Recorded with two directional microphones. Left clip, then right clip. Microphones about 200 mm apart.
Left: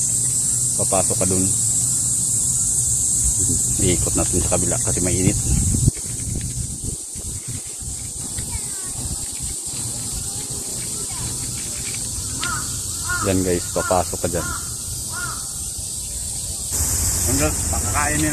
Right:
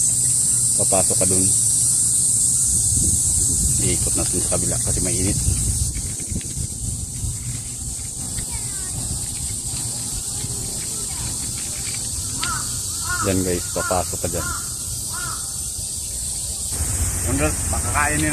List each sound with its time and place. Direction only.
0.7 s speech: centre (ahead or behind)
3.8 s speech: 20° left (ahead or behind)
13.2 s speech: centre (ahead or behind)
13.5 s speech: 20° left (ahead or behind)
17.3 s hiss: centre (ahead or behind)